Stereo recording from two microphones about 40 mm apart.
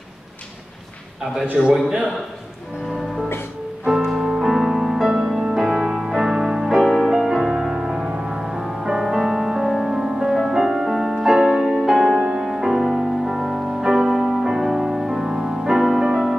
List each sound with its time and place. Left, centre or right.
1.6 s a man's voice: centre
3.8 s music: centre
12.2 s music: right
12.4 s music: centre